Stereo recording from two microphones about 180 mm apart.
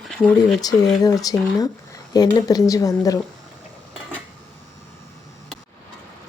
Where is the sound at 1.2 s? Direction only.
20° left (ahead or behind).